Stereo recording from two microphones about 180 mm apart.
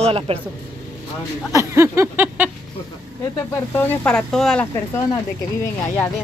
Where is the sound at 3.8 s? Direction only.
5° left (ahead or behind).